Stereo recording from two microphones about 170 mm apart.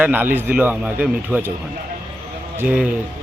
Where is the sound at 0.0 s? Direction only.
10° right (ahead or behind).